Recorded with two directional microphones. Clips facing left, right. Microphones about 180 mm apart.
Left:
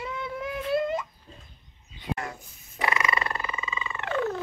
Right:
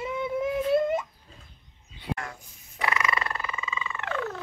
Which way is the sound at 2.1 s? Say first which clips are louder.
Left 1 dB; 20° left (ahead or behind).